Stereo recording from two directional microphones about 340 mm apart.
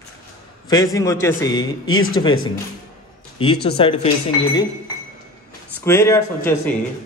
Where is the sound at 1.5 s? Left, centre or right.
Left.